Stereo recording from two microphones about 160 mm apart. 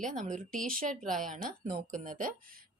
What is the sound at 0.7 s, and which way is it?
A woman's voice, 60° right (ahead or behind).